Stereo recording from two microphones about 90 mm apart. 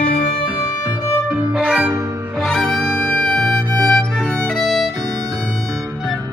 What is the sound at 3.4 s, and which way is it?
Music, 45° right (ahead or behind).